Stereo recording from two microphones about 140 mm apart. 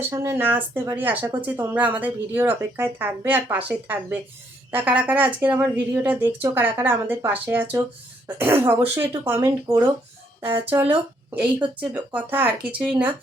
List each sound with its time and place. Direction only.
0.1 s speech: 20° right (ahead or behind)